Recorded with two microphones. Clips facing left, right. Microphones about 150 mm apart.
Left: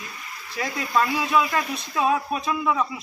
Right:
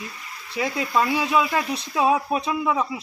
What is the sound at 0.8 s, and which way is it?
Speech, 20° right (ahead or behind).